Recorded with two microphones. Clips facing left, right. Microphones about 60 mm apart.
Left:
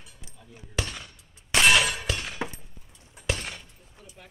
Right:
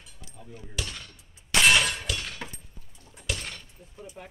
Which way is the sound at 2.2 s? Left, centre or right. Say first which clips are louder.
Left 5 dB; centre.